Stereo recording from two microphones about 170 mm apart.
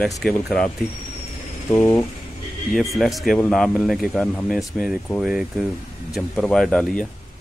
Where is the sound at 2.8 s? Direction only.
Centre (ahead or behind).